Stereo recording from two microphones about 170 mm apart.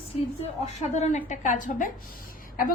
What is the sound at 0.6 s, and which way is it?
A woman's voice, 40° left (ahead or behind).